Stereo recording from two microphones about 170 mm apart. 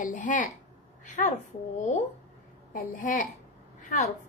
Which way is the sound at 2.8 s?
50° left (ahead or behind).